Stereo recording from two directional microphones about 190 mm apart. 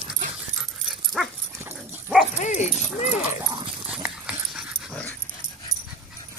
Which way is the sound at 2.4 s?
40° left (ahead or behind).